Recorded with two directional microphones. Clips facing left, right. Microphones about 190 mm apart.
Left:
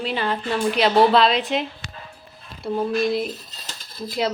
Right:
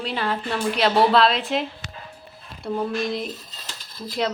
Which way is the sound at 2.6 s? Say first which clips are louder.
Left 3 dB; 5° left (ahead or behind).